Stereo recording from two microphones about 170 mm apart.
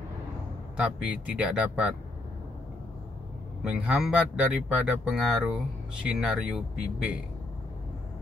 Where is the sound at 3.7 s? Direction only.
5° right (ahead or behind).